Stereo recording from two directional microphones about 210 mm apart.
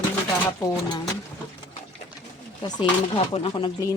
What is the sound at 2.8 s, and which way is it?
Speech, 25° left (ahead or behind).